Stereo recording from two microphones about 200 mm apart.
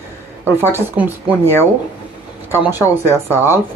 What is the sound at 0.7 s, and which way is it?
Speech, 5° right (ahead or behind).